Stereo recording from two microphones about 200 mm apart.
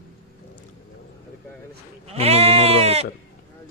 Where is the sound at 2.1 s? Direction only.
30° right (ahead or behind).